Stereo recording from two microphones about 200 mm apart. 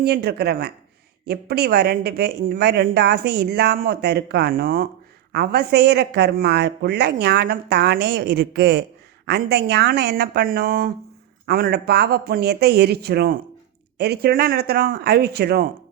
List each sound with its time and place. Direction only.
0.0 s speech: 55° right (ahead or behind)